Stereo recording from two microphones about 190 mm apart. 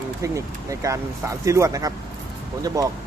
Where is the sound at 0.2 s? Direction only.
15° right (ahead or behind).